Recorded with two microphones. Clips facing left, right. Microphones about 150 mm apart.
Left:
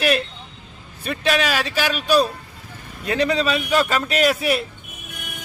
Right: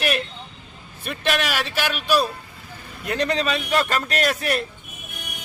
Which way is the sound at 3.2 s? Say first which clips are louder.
Left 3 dB; 5° left (ahead or behind).